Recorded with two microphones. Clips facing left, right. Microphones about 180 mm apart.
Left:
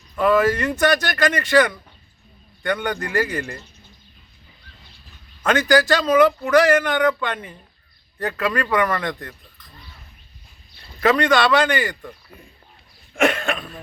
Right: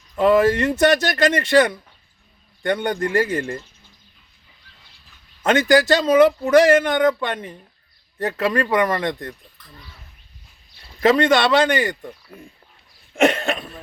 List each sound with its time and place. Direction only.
0.2 s speech: 25° right (ahead or behind)
5.4 s speech: 25° right (ahead or behind)
11.0 s speech: 25° right (ahead or behind)
13.1 s cough: 25° right (ahead or behind)